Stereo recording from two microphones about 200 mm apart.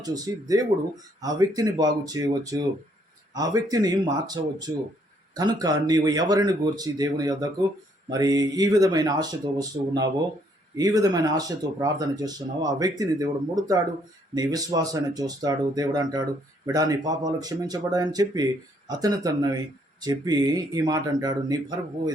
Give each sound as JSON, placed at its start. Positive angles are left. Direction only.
{"t": 0.0, "sound": "speech", "side_deg": -20}